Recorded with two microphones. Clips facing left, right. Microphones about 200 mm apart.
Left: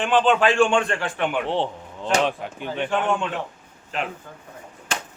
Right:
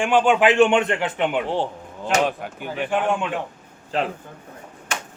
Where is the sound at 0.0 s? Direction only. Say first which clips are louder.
Right 2 dB; 10° right (ahead or behind).